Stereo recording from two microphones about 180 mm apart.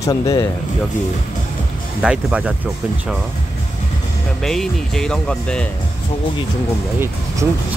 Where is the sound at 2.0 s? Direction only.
5° right (ahead or behind).